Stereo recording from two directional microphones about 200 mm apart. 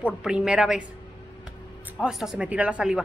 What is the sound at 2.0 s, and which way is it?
A woman's voice, centre (ahead or behind).